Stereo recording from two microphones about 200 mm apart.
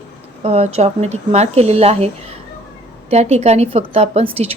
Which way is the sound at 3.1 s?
35° right (ahead or behind).